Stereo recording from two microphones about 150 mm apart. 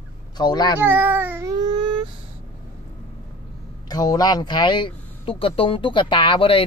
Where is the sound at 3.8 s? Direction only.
25° left (ahead or behind).